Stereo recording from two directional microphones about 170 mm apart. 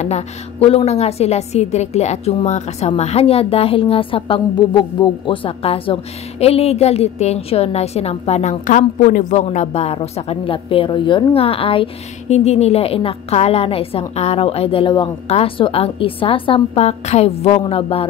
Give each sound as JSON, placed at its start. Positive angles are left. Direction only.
{"t": 0.0, "sound": "a woman's voice", "side_deg": 40}